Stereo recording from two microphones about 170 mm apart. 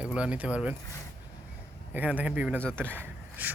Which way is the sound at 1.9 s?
10° right (ahead or behind).